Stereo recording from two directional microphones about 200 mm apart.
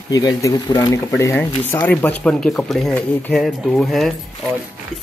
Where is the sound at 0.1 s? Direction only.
15° left (ahead or behind).